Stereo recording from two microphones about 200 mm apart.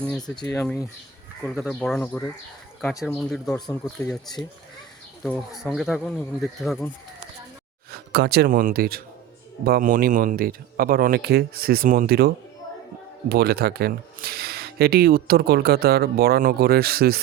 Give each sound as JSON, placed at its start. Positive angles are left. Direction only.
{"t": 0.1, "sound": "speech", "side_deg": 5}
{"t": 5.2, "sound": "speech", "side_deg": 0}
{"t": 7.9, "sound": "speech", "side_deg": -50}